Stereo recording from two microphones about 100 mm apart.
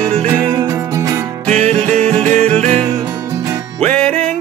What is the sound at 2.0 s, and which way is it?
Music, 10° left (ahead or behind).